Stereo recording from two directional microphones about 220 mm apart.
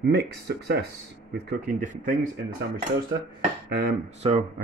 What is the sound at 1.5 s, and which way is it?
Speech, 40° right (ahead or behind).